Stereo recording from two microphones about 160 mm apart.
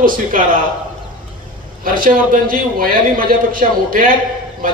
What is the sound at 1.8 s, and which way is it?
Speech, 60° right (ahead or behind).